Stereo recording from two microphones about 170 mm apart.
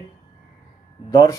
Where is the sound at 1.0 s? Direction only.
20° left (ahead or behind).